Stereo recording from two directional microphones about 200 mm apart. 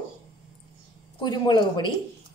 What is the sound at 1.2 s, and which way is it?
Speech, 20° left (ahead or behind).